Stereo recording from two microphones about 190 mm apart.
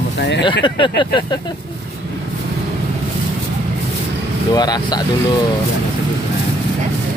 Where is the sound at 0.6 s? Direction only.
25° left (ahead or behind).